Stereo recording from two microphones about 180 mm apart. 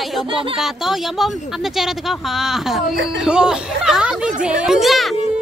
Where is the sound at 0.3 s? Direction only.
30° right (ahead or behind).